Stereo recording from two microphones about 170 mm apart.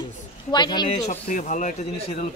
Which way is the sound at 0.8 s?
40° left (ahead or behind).